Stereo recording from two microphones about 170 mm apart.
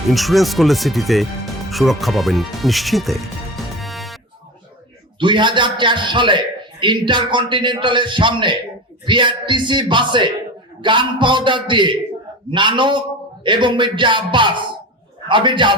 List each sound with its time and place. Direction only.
0.1 s speech: centre (ahead or behind)
5.2 s a man's voice: 30° right (ahead or behind)